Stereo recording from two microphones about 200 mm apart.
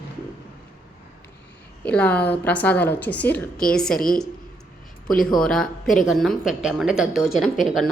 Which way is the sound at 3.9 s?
45° left (ahead or behind).